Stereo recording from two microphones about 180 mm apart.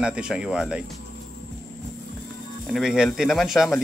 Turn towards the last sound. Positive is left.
turn(degrees=0)  # may be behind; listen again after turning